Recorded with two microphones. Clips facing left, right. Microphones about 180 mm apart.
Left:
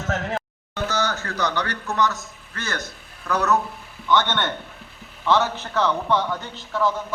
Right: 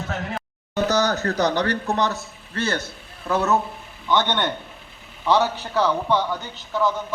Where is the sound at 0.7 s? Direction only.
40° right (ahead or behind).